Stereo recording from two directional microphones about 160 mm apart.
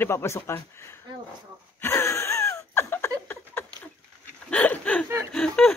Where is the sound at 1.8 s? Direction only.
15° left (ahead or behind).